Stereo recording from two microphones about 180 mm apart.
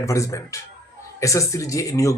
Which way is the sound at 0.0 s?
15° left (ahead or behind).